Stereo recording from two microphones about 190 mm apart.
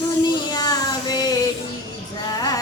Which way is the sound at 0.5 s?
20° left (ahead or behind).